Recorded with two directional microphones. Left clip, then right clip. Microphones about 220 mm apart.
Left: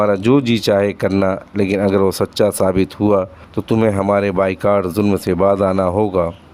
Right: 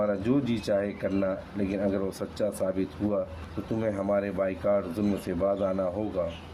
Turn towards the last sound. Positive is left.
turn(degrees=45)  # may be behind; listen again after turning